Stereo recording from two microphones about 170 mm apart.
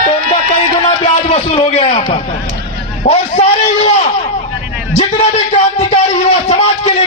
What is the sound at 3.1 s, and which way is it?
Speech, 35° left (ahead or behind).